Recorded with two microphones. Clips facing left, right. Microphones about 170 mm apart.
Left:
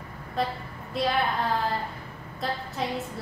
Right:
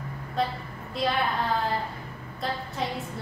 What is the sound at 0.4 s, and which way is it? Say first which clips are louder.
Speech: right 1 dB; centre (ahead or behind).